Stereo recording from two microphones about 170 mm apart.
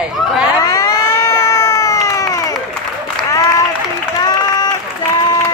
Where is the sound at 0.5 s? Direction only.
20° left (ahead or behind).